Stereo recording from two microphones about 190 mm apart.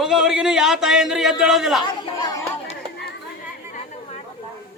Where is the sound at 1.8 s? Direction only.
20° left (ahead or behind).